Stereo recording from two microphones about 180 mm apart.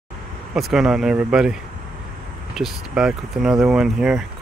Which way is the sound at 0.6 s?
Centre (ahead or behind).